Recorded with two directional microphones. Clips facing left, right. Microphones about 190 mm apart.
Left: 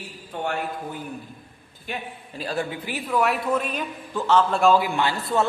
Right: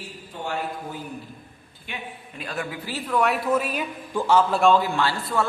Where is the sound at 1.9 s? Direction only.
40° left (ahead or behind).